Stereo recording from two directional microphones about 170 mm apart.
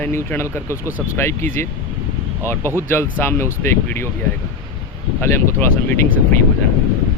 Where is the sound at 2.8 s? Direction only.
15° left (ahead or behind).